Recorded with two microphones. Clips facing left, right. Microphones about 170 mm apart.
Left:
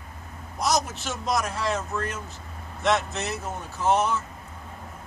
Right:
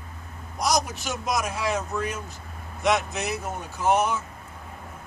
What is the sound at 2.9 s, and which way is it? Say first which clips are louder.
Speech: right 1 dB; 15° right (ahead or behind).